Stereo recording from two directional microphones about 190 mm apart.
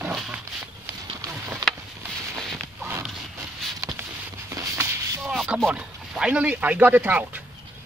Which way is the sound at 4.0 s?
10° right (ahead or behind).